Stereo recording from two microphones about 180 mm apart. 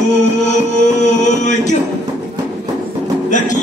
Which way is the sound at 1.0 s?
40° left (ahead or behind).